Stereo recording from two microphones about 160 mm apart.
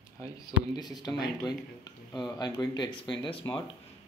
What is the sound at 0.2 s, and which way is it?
Speech, 25° left (ahead or behind).